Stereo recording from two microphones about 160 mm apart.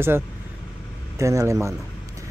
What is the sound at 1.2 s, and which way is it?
Speech, 20° right (ahead or behind).